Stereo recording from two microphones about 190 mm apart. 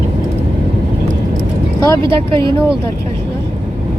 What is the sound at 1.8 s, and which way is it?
Speech, 15° left (ahead or behind).